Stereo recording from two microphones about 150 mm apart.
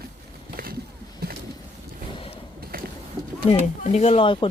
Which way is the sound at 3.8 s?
45° left (ahead or behind).